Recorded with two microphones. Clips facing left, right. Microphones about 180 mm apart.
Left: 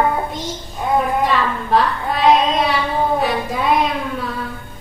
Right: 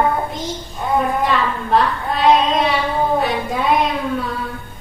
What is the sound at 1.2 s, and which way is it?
A woman's voice, centre (ahead or behind).